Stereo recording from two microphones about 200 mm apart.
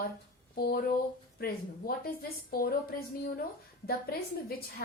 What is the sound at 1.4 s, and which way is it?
A woman's voice, 50° left (ahead or behind).